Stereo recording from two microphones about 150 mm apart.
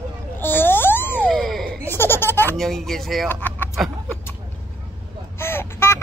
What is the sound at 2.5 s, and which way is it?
Speech, centre (ahead or behind).